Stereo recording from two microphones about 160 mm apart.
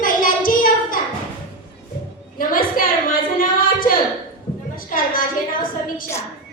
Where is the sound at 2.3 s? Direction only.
60° left (ahead or behind).